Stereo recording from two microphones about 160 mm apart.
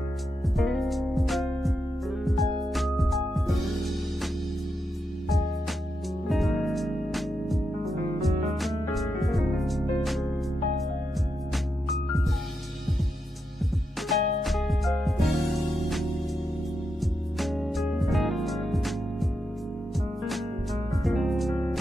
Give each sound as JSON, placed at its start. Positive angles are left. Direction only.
{"t": 0.6, "sound": "music", "side_deg": 0}
{"t": 6.2, "sound": "music", "side_deg": 0}
{"t": 11.5, "sound": "music", "side_deg": 0}
{"t": 14.0, "sound": "music", "side_deg": 0}
{"t": 20.2, "sound": "music", "side_deg": 0}